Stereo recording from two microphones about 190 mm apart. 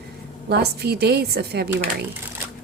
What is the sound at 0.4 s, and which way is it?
A woman's voice, 60° right (ahead or behind).